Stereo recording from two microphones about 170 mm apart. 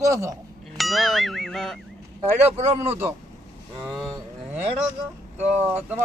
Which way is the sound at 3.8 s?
5° right (ahead or behind).